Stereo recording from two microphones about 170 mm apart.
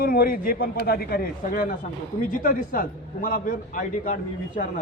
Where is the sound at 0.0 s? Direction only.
60° left (ahead or behind).